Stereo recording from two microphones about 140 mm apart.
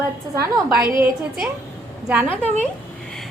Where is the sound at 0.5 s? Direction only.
20° right (ahead or behind).